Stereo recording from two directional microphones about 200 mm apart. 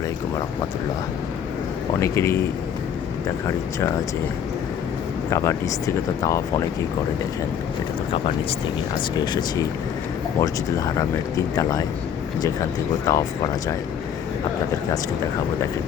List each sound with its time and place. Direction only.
2.0 s speech: 15° left (ahead or behind)
5.3 s speech: 15° left (ahead or behind)
9.2 s speech: 20° left (ahead or behind)
13.1 s speech: 15° left (ahead or behind)